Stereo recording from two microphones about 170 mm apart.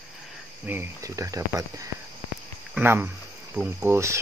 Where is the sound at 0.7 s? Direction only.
15° right (ahead or behind).